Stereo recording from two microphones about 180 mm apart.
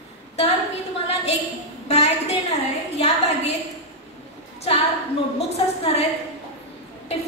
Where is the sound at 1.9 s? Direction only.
35° left (ahead or behind).